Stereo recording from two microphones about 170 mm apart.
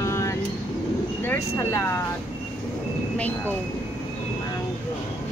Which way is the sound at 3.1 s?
10° left (ahead or behind).